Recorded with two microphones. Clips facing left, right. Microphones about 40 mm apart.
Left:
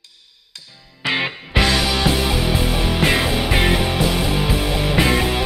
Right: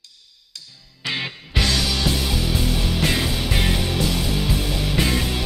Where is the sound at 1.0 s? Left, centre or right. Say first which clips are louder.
Left 6 dB; left.